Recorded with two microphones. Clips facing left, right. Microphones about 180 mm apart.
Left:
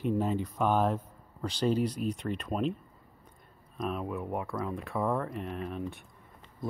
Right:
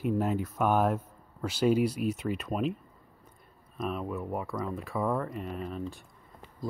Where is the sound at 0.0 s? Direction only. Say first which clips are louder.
Right 1 dB; 5° right (ahead or behind).